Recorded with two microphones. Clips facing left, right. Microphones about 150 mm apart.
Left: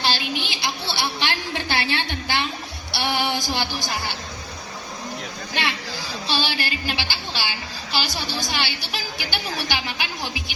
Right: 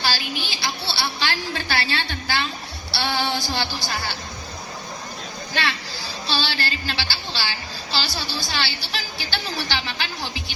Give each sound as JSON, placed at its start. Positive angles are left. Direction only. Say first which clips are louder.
{"t": 0.0, "sound": "a woman's voice", "louder": "left 2 dB", "side_deg": 20}
{"t": 6.2, "sound": "a woman's voice", "louder": "even", "side_deg": 15}